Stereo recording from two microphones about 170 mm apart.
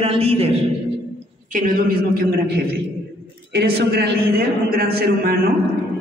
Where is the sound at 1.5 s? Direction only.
55° right (ahead or behind).